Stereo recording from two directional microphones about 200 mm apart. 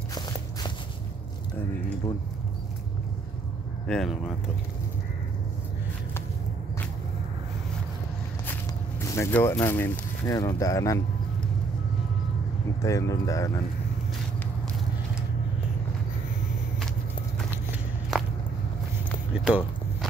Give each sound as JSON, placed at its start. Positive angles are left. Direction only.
{"t": 0.1, "sound": "walk", "side_deg": 20}
{"t": 3.8, "sound": "speech", "side_deg": 0}
{"t": 9.0, "sound": "speech", "side_deg": 15}
{"t": 12.8, "sound": "speech", "side_deg": 15}
{"t": 18.1, "sound": "walk", "side_deg": 0}
{"t": 19.4, "sound": "walk", "side_deg": 0}